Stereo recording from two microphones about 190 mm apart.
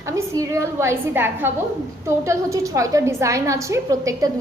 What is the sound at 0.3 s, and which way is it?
A woman's voice, 15° right (ahead or behind).